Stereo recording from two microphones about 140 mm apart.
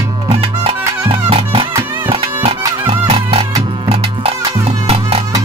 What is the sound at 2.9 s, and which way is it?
Music, 40° right (ahead or behind).